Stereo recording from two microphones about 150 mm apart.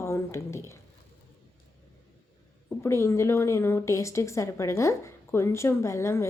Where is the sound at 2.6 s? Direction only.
20° left (ahead or behind).